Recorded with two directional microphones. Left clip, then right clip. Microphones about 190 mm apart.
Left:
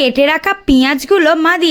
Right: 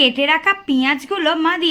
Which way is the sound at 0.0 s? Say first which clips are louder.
Left 3 dB; 55° left (ahead or behind).